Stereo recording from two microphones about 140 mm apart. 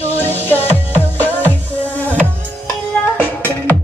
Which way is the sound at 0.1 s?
15° left (ahead or behind).